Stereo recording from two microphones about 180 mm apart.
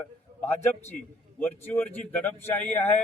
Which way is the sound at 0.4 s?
10° left (ahead or behind).